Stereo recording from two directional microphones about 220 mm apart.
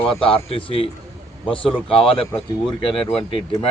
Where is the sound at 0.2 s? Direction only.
25° left (ahead or behind).